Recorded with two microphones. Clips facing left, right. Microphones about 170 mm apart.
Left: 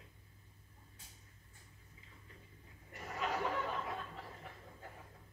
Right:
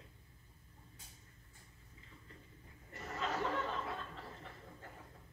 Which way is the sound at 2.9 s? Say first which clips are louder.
Left 1 dB; 15° left (ahead or behind).